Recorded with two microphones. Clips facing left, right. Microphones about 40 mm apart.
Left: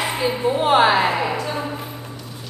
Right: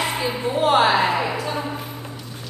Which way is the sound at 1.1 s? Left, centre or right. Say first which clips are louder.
Left 1 dB; centre.